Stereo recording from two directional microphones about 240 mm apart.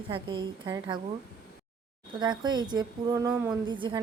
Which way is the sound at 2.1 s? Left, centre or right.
Centre.